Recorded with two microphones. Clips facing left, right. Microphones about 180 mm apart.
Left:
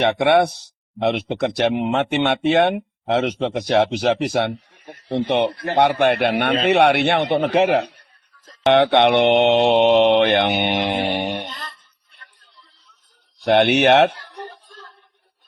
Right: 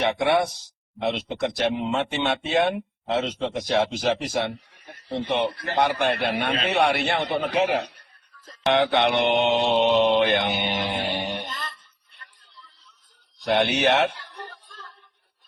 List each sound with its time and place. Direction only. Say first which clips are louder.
0.3 s a man's voice: left 6 dB; 65° left (ahead or behind)
13.4 s speech: left 6 dB; 65° left (ahead or behind)